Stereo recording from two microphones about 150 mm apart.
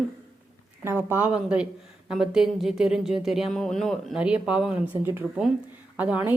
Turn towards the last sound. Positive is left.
turn(degrees=-10)  # may be behind; listen again after turning